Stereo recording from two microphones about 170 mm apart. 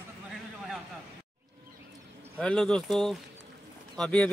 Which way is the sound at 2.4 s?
5° left (ahead or behind).